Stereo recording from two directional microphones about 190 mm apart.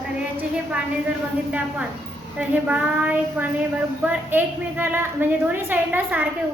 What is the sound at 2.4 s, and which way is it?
A woman's voice, 5° right (ahead or behind).